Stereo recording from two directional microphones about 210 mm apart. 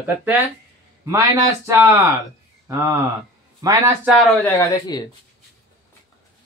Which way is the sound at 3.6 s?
15° right (ahead or behind).